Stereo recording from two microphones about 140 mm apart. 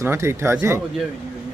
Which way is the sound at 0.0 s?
20° right (ahead or behind).